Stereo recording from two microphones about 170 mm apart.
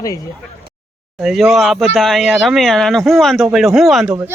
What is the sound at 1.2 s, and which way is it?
Speech, centre (ahead or behind).